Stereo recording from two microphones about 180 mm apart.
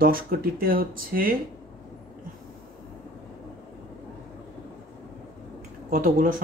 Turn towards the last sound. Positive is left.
turn(degrees=-50)  # may be behind; listen again after turning